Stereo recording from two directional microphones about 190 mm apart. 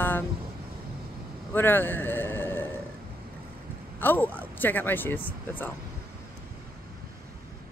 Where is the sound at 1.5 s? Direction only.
10° left (ahead or behind).